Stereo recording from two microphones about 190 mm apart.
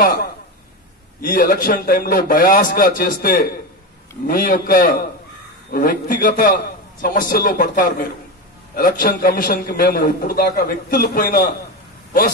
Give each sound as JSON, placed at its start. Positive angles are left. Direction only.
{"t": 0.0, "sound": "a man's voice", "side_deg": 50}